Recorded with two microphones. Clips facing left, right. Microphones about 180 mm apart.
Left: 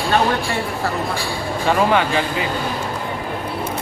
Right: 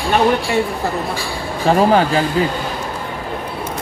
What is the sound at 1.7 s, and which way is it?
Speech, 35° right (ahead or behind).